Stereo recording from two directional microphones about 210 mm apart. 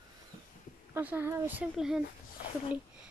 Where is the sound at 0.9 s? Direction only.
10° right (ahead or behind).